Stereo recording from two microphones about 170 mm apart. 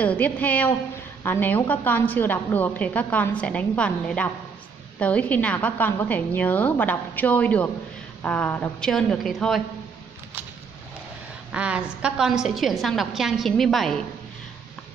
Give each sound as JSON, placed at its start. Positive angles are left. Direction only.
{"t": 0.0, "sound": "a woman's voice", "side_deg": 10}
{"t": 11.5, "sound": "a woman's voice", "side_deg": -5}